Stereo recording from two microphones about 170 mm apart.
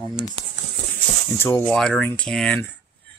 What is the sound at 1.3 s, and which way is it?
Speech, 15° left (ahead or behind).